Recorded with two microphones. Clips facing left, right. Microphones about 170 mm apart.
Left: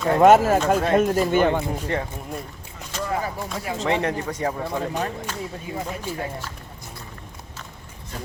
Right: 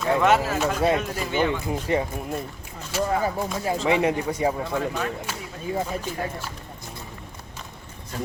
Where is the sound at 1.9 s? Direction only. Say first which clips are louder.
Right 3 dB; 10° right (ahead or behind).